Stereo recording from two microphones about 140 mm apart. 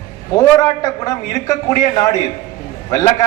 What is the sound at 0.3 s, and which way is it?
A man's voice, 25° left (ahead or behind).